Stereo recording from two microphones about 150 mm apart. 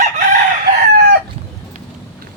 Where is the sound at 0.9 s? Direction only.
90° right.